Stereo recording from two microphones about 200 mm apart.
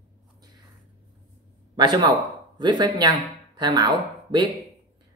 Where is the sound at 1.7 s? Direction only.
20° right (ahead or behind).